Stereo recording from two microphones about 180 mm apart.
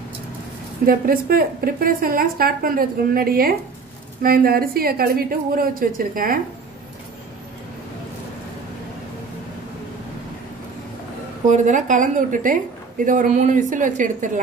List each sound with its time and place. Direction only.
0.8 s a woman's voice: 55° right (ahead or behind)
11.4 s speech: 45° right (ahead or behind)